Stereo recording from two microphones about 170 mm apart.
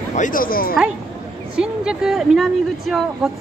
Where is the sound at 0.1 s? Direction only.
50° left (ahead or behind).